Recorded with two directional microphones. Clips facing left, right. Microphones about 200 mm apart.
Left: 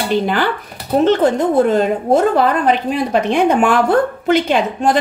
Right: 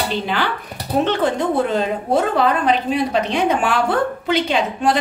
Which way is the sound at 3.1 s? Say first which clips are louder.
Left 4 dB; 50° left (ahead or behind).